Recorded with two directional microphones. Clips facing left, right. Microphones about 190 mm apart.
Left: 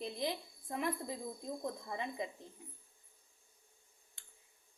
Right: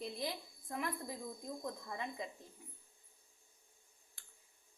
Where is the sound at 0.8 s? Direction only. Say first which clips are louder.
Left 3 dB; 25° left (ahead or behind).